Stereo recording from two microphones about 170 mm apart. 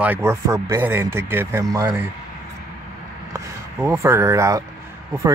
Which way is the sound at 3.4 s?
15° right (ahead or behind).